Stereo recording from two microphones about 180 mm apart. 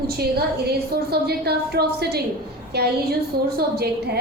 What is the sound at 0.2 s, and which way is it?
A woman's voice, 60° right (ahead or behind).